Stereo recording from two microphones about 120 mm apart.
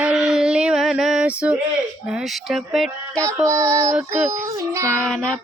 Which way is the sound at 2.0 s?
Centre (ahead or behind).